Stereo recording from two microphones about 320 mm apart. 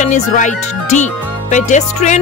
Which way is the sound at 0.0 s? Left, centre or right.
Left.